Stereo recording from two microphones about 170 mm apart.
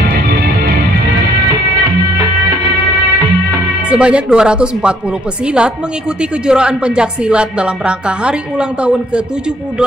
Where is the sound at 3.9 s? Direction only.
5° right (ahead or behind).